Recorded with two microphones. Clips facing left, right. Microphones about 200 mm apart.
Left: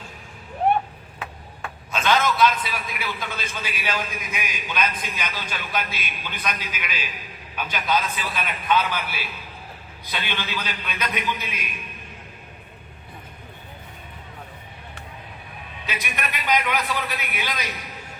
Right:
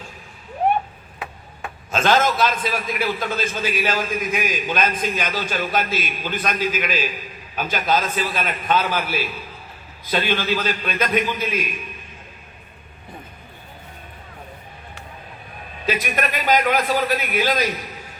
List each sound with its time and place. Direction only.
1.9 s a man's voice: 45° right (ahead or behind)
15.8 s a man's voice: 45° right (ahead or behind)